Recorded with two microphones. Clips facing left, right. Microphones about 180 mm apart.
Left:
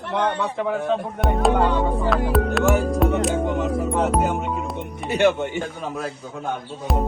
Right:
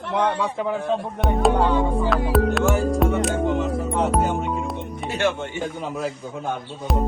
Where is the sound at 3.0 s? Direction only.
Centre (ahead or behind).